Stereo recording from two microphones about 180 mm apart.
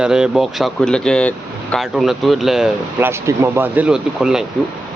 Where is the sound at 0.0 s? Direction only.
5° right (ahead or behind).